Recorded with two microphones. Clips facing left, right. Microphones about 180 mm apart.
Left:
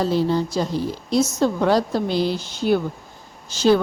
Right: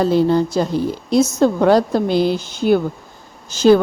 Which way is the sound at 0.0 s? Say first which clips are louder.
Right 5 dB; 55° right (ahead or behind).